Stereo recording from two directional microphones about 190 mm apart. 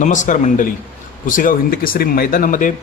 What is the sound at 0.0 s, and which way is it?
Speech, 40° left (ahead or behind).